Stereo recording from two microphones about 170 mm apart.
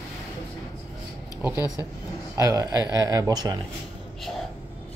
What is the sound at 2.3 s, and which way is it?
Speech, 20° right (ahead or behind).